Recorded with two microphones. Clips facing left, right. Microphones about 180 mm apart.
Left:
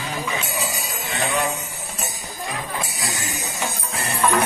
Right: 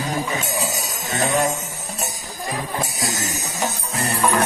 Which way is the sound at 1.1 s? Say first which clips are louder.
Right 4 dB; 40° right (ahead or behind).